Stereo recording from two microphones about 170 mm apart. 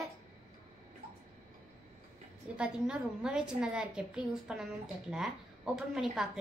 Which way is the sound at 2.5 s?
5° right (ahead or behind).